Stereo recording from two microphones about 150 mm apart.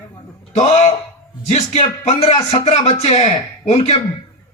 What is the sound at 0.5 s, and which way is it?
Speech, 45° left (ahead or behind).